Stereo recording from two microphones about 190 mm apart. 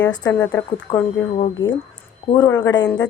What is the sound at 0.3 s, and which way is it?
Speech, 10° left (ahead or behind).